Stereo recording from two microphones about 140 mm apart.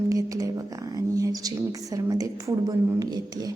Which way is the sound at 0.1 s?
25° right (ahead or behind).